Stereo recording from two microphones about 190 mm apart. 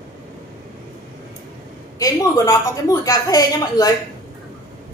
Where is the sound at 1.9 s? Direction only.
20° left (ahead or behind).